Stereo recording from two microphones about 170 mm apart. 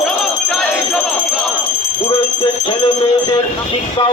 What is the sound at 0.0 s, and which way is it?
Jingle bell, centre (ahead or behind).